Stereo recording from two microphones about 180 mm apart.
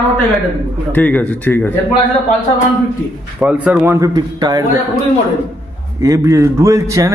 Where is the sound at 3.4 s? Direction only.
5° right (ahead or behind); by 4.7 s 20° right (ahead or behind).